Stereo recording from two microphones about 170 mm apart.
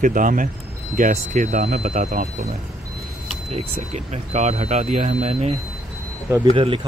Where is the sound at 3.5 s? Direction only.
35° right (ahead or behind).